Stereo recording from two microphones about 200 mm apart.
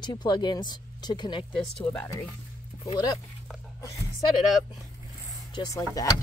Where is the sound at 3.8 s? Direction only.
15° left (ahead or behind).